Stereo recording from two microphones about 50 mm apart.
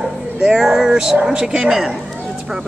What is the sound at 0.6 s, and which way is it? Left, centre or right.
Speech, centre.